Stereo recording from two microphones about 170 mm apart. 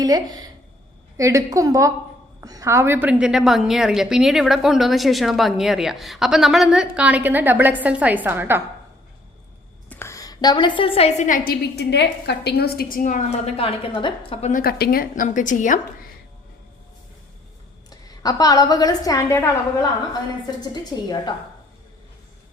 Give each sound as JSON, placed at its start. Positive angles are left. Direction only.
{"t": 1.1, "sound": "a woman's voice", "side_deg": -20}
{"t": 9.9, "sound": "a woman's voice", "side_deg": 15}
{"t": 11.4, "sound": "a woman's voice", "side_deg": 80}
{"t": 14.5, "sound": "a woman's voice", "side_deg": 65}
{"t": 18.2, "sound": "a woman's voice", "side_deg": 20}
{"t": 20.9, "sound": "a woman's voice", "side_deg": 25}